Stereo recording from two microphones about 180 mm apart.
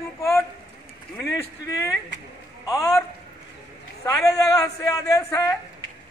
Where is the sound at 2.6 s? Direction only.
20° left (ahead or behind).